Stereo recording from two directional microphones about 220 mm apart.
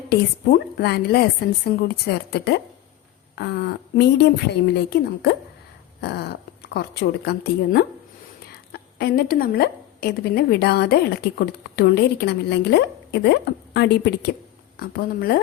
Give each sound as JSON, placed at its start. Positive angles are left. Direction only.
{"t": 0.1, "sound": "a woman's voice", "side_deg": 45}